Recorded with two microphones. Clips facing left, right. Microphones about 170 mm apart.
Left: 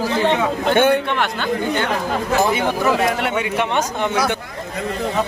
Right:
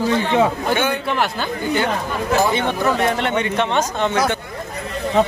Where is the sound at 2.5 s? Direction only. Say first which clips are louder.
Left 1 dB; 5° left (ahead or behind).